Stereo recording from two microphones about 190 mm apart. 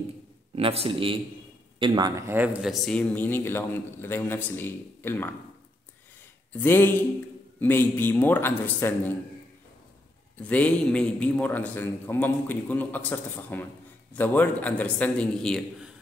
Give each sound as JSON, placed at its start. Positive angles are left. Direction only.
{"t": 0.6, "sound": "a man's voice", "side_deg": -30}
{"t": 6.5, "sound": "speech", "side_deg": 10}
{"t": 10.3, "sound": "speech", "side_deg": 10}